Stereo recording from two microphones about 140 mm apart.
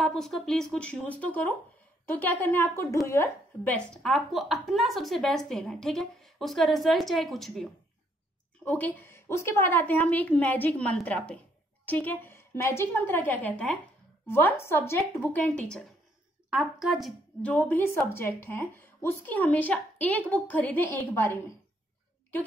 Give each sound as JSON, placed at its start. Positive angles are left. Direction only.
{"t": 0.0, "sound": "a woman's voice", "side_deg": 5}
{"t": 8.6, "sound": "speech", "side_deg": 15}
{"t": 16.4, "sound": "speech", "side_deg": -5}